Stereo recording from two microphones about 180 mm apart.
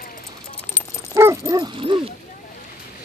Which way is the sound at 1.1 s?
15° right (ahead or behind).